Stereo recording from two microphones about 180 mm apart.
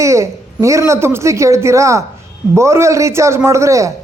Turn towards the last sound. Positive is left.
turn(degrees=-15)  # may be behind; listen again after turning